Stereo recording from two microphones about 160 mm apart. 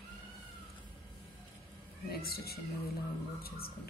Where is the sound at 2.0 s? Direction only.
75° left (ahead or behind).